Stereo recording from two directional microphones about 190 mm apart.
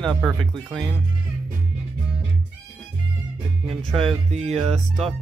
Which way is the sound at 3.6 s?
5° left (ahead or behind).